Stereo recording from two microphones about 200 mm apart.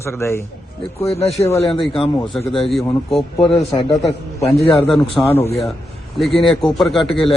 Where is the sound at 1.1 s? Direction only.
30° left (ahead or behind).